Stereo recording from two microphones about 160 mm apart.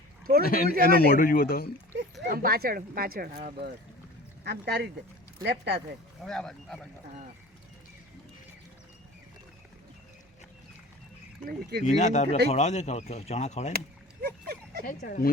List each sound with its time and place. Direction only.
0.4 s speech: 65° left (ahead or behind)
2.3 s speech: 65° right (ahead or behind)
4.4 s speech: 90° right
6.2 s speech: 5° left (ahead or behind)
11.4 s speech: 80° right
11.9 s speech: 45° left (ahead or behind)
13.7 s a sound: 75° right (ahead or behind)
14.8 s speech: 60° left (ahead or behind)